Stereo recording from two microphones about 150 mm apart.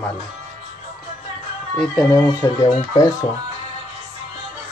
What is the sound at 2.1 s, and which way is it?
Speech, 20° left (ahead or behind).